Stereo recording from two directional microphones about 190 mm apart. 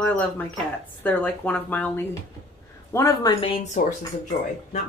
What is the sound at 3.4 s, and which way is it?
Speech, 30° left (ahead or behind).